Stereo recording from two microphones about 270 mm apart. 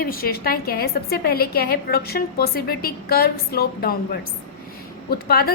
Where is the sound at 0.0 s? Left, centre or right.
Left.